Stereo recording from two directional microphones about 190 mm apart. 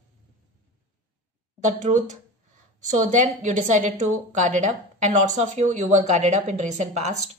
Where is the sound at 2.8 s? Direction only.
40° right (ahead or behind).